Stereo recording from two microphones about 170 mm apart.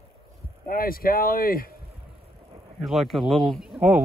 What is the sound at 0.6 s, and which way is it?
Speech, 55° left (ahead or behind).